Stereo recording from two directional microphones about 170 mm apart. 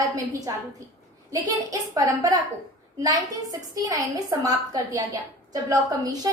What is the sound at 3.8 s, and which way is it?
A woman's voice, 20° right (ahead or behind).